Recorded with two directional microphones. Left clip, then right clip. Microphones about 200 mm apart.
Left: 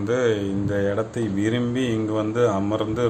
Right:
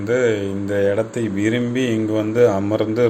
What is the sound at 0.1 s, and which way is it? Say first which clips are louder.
Speech: right 4 dB; 10° left (ahead or behind).